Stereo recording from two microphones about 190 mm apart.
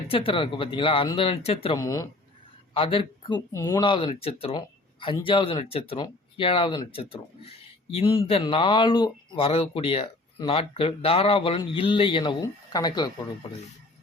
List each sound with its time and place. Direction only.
0.1 s speech: 30° left (ahead or behind)
1.8 s speech: 20° left (ahead or behind)